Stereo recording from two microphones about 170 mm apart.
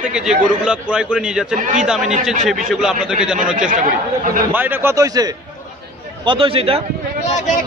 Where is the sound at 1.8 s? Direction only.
5° right (ahead or behind).